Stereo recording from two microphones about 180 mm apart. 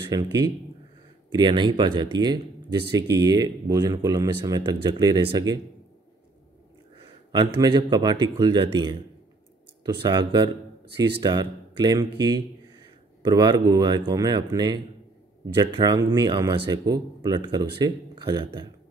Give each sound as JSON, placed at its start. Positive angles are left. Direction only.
{"t": 0.1, "sound": "speech", "side_deg": -20}
{"t": 7.5, "sound": "speech", "side_deg": -20}